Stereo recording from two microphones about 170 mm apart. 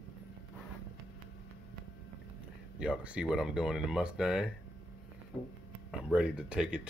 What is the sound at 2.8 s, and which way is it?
Speech, 5° right (ahead or behind).